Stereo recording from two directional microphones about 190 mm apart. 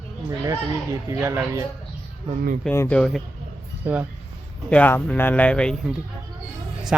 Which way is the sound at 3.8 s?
10° right (ahead or behind).